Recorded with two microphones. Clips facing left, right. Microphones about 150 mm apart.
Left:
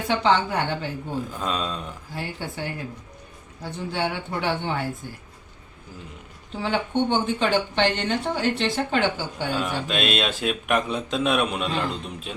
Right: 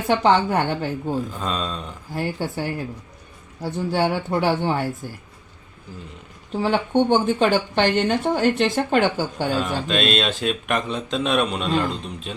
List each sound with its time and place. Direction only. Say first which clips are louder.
0.1 s speech: right 4 dB; 45° right (ahead or behind)
1.4 s speech: right 1 dB; 5° left (ahead or behind)
2.1 s a woman's voice: right 7 dB; 40° right (ahead or behind)
6.5 s speech: right 5 dB; 40° right (ahead or behind)
9.6 s speech: right 1 dB; 5° left (ahead or behind)